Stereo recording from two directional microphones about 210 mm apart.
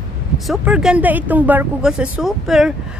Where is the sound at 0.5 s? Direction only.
5° right (ahead or behind).